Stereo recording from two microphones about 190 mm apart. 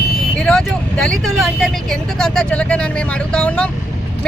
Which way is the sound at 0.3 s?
5° left (ahead or behind).